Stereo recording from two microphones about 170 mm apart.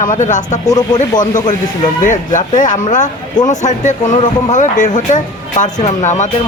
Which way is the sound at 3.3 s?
25° left (ahead or behind).